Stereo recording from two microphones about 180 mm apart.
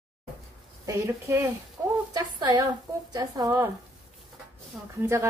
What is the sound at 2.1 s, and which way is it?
Speech, 20° right (ahead or behind).